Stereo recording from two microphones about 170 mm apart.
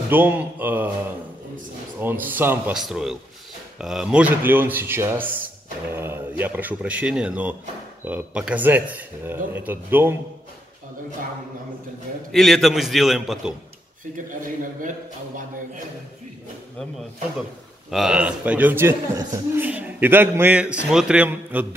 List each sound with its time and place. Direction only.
0.1 s a man's voice: 10° right (ahead or behind)
2.0 s a man's voice: 10° right (ahead or behind)
12.3 s a man's voice: centre (ahead or behind)
14.1 s a man's voice: 50° right (ahead or behind)
17.9 s a man's voice: 5° right (ahead or behind)